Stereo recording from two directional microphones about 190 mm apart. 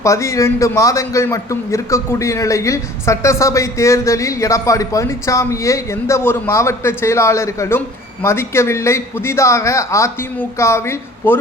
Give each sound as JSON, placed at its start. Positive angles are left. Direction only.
{"t": 0.0, "sound": "a man's voice", "side_deg": 15}